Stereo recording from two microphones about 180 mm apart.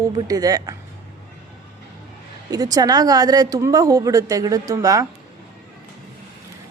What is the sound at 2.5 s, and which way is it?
Speech, 20° right (ahead or behind).